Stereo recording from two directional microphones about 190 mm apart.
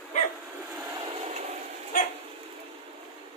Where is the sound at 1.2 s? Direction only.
30° right (ahead or behind).